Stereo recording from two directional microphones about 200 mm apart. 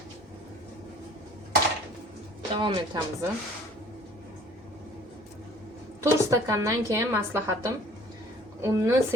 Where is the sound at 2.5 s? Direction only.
20° right (ahead or behind).